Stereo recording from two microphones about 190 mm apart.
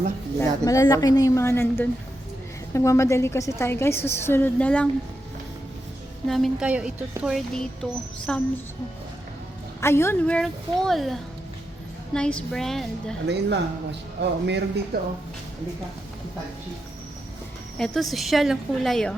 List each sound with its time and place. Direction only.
0.3 s a woman's voice: 15° left (ahead or behind)
6.2 s speech: centre (ahead or behind)
9.8 s speech: 15° left (ahead or behind)
13.2 s speech: 65° right (ahead or behind)
17.7 s speech: centre (ahead or behind)